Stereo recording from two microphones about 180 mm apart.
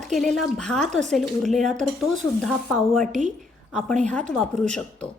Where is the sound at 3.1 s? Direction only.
40° right (ahead or behind).